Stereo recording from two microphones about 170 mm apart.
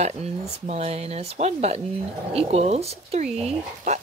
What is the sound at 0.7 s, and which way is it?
Speech, 40° right (ahead or behind).